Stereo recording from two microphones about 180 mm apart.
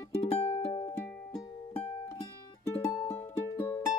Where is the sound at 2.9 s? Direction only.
20° left (ahead or behind).